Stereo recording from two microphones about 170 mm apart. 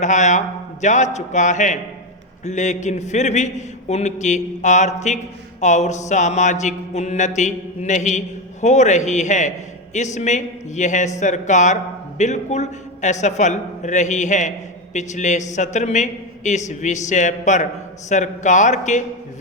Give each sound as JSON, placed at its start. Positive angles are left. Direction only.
{"t": 0.0, "sound": "a man's voice", "side_deg": 45}